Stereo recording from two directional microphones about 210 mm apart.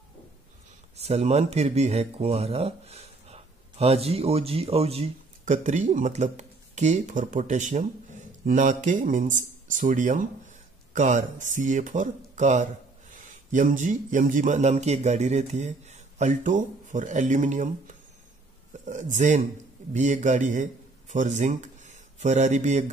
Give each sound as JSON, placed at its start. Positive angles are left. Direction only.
{"t": 0.9, "sound": "speech", "side_deg": -30}